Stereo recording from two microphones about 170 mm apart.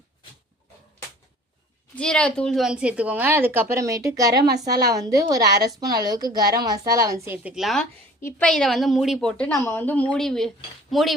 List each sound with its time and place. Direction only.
2.0 s a woman's voice: 5° left (ahead or behind); by 7.2 s 20° right (ahead or behind)
7.3 s a woman's voice: 5° right (ahead or behind)